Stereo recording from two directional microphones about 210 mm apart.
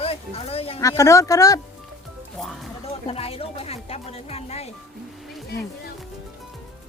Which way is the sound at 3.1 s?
30° left (ahead or behind).